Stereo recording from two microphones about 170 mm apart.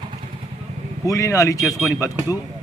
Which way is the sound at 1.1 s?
20° left (ahead or behind).